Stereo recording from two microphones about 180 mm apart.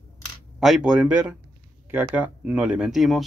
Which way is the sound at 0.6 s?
5° right (ahead or behind).